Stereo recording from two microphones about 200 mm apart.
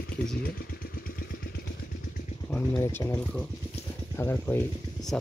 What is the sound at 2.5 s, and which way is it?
Speech, 10° left (ahead or behind).